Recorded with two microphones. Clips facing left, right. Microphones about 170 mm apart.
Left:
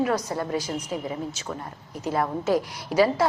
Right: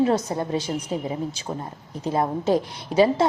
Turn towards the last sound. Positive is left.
turn(degrees=-25)  # may be behind; listen again after turning